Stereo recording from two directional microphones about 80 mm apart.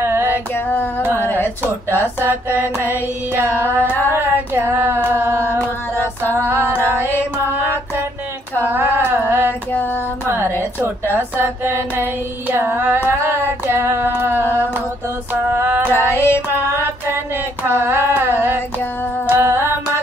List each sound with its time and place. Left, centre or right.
0.0 s female singing: right
0.7 s a sound: left
1.1 s carnatic music: left
1.6 s singing: right
3.8 s a sound: left
4.1 s singing: right
8.5 s singing: right
11.1 s singing: right
15.5 s singing: right
15.9 s music: left
17.7 s singing: right
19.2 s music: right